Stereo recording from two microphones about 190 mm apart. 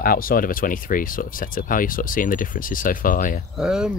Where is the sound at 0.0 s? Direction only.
50° left (ahead or behind).